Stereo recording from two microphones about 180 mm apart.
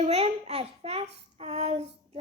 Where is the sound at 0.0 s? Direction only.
35° right (ahead or behind).